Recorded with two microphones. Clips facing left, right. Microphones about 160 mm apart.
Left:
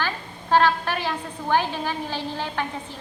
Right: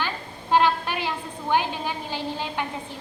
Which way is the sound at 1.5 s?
15° right (ahead or behind).